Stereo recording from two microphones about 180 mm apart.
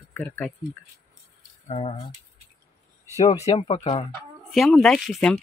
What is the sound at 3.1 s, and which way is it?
Speech, 35° left (ahead or behind).